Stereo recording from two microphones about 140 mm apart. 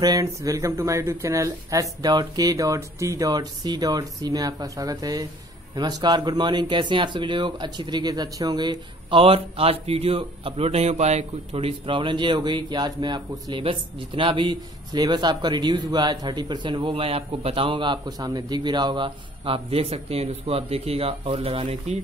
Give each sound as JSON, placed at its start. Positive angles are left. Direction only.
{"t": 0.0, "sound": "speech", "side_deg": -25}